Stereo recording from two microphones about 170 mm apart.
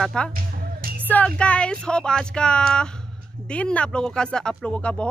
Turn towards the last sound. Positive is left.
turn(degrees=5)  # may be behind; listen again after turning